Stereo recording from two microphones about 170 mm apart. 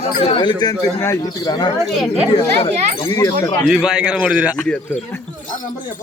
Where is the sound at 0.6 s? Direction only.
20° left (ahead or behind).